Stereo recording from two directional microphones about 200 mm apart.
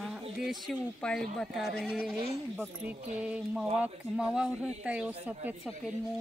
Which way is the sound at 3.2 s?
5° right (ahead or behind).